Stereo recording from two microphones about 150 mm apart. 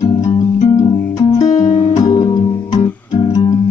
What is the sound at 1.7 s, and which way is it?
Music, 55° left (ahead or behind).